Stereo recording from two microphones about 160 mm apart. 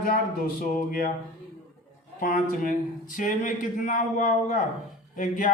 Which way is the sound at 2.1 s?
60° left (ahead or behind).